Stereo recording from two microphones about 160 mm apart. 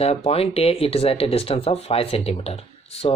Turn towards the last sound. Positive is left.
turn(degrees=40)  # may be behind; listen again after turning